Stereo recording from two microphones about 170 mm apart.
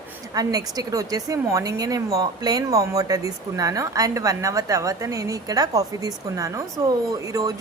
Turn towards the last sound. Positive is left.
turn(degrees=-20)  # may be behind; listen again after turning